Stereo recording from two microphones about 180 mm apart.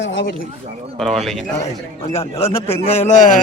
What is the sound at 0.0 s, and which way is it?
Speech, 90° left.